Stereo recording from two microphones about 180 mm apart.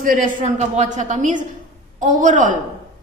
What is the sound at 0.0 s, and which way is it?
A woman's voice, 50° right (ahead or behind).